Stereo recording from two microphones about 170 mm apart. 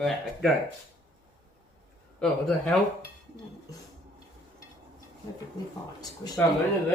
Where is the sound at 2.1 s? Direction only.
5° left (ahead or behind).